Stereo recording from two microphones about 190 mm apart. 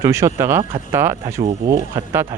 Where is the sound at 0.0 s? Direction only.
15° right (ahead or behind).